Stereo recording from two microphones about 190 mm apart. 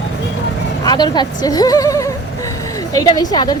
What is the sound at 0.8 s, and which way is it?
Speech, 20° left (ahead or behind).